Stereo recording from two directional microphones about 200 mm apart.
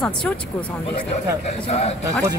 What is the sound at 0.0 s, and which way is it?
Speech, 5° left (ahead or behind).